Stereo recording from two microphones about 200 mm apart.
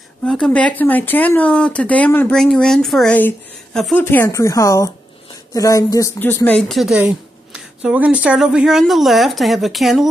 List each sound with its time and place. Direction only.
0.2 s speech: 5° left (ahead or behind)